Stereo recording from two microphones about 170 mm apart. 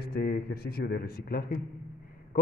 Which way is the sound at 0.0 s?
65° left (ahead or behind).